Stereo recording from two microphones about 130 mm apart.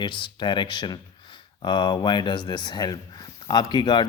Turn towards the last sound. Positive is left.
turn(degrees=35)  # may be behind; listen again after turning